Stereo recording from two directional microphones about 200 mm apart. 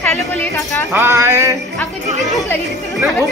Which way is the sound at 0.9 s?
10° right (ahead or behind).